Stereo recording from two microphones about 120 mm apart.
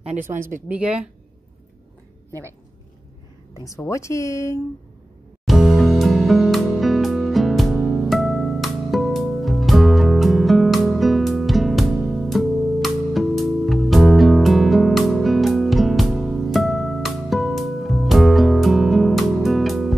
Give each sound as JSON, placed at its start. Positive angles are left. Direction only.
{"t": 0.0, "sound": "speech", "side_deg": -80}
{"t": 0.7, "sound": "speech", "side_deg": -10}
{"t": 3.5, "sound": "speech", "side_deg": 25}
{"t": 5.4, "sound": "music", "side_deg": 0}